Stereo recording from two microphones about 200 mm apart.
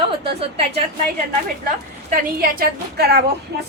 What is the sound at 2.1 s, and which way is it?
A woman's voice, 45° right (ahead or behind).